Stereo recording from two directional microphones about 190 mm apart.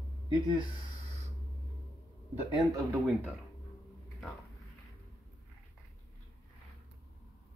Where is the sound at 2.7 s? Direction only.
10° right (ahead or behind).